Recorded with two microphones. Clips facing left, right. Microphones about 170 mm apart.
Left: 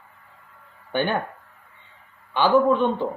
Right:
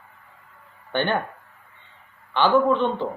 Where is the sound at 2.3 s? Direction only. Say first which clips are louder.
Left 1 dB; 10° left (ahead or behind).